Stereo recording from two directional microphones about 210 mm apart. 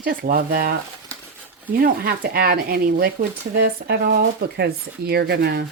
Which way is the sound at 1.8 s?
45° right (ahead or behind).